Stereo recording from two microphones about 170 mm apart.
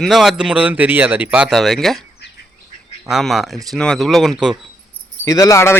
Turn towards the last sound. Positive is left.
turn(degrees=15)  # may be behind; listen again after turning